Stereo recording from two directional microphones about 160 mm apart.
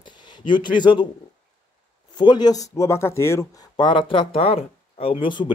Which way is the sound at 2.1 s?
25° left (ahead or behind).